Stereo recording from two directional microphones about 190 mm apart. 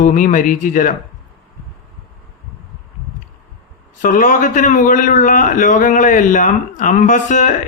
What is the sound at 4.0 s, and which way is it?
A man's voice, 45° left (ahead or behind).